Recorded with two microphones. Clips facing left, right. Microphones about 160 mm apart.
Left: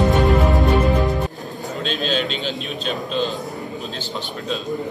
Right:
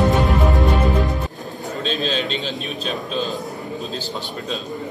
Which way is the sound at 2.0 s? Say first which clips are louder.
Left 1 dB; centre (ahead or behind).